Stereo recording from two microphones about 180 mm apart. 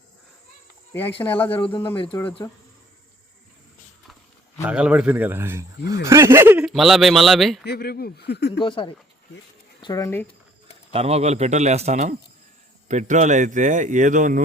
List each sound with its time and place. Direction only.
1.2 s speech: 10° left (ahead or behind)
1.5 s speech: 25° left (ahead or behind)
4.6 s a man's voice: 5° right (ahead or behind)
6.7 s speech: centre (ahead or behind)
7.6 s speech: 60° left (ahead or behind)
8.6 s speech: 25° left (ahead or behind)
10.9 s speech: 35° right (ahead or behind)